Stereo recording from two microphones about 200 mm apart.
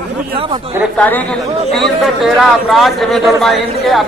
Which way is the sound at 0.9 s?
10° left (ahead or behind).